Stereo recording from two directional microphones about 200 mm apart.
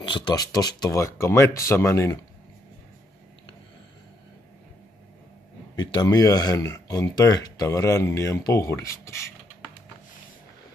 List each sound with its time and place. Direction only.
0.0 s speech: 20° left (ahead or behind)
5.8 s speech: 20° left (ahead or behind)